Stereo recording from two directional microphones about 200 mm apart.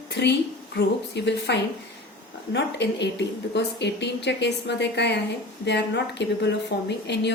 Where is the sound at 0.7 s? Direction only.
60° left (ahead or behind).